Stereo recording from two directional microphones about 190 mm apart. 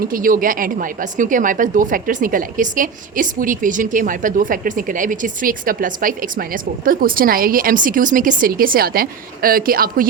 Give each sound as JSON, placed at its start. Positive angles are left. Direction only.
{"t": 0.0, "sound": "a woman's voice", "side_deg": -45}